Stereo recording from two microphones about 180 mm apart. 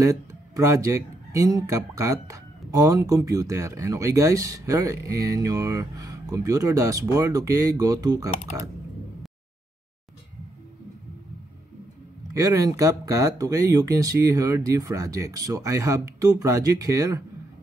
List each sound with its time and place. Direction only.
0.0 s speech: 20° right (ahead or behind)
12.4 s speech: 20° right (ahead or behind)